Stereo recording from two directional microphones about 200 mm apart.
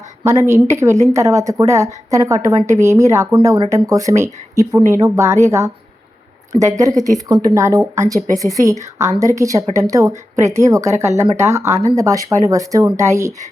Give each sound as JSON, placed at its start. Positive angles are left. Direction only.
{"t": 0.2, "sound": "a woman's voice", "side_deg": -15}